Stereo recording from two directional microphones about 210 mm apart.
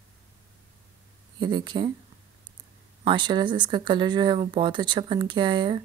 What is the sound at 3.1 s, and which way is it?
Speech, 20° right (ahead or behind).